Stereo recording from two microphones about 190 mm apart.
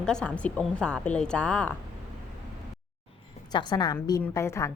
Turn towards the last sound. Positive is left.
turn(degrees=15)  # may be behind; listen again after turning